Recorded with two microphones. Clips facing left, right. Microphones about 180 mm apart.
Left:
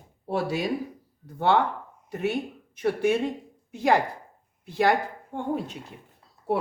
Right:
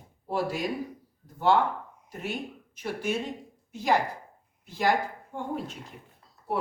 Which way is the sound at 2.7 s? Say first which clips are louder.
Left 7 dB; 65° left (ahead or behind).